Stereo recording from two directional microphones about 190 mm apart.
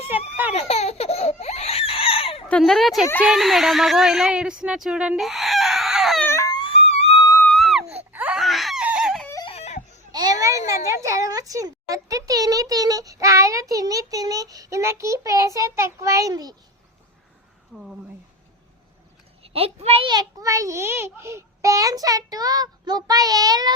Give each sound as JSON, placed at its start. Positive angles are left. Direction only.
{"t": 0.5, "sound": "baby laughter", "side_deg": 35}
{"t": 2.5, "sound": "a woman's voice", "side_deg": 5}
{"t": 6.2, "sound": "a sound", "side_deg": 15}
{"t": 7.4, "sound": "baby cry", "side_deg": 0}
{"t": 9.2, "sound": "a sound", "side_deg": 15}
{"t": 9.5, "sound": "baby cry", "side_deg": 35}
{"t": 10.1, "sound": "a sound", "side_deg": -20}
{"t": 10.7, "sound": "speech", "side_deg": -15}
{"t": 19.4, "sound": "a child's voice", "side_deg": -30}